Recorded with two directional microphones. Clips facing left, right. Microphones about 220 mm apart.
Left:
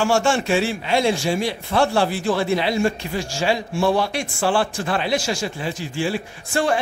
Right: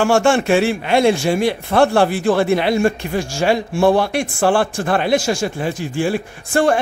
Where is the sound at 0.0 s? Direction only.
55° right (ahead or behind).